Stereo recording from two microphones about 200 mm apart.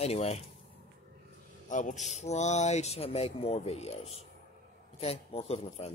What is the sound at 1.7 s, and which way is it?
Speech, 40° left (ahead or behind).